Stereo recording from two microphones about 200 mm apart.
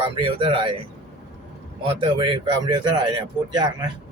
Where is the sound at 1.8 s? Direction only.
25° right (ahead or behind).